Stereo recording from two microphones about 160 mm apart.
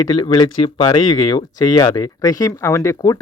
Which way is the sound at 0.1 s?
25° left (ahead or behind).